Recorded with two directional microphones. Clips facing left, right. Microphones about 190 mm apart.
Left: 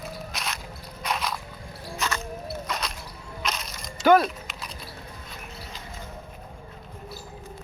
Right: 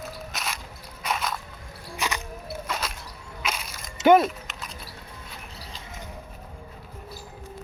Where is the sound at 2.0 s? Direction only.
15° right (ahead or behind).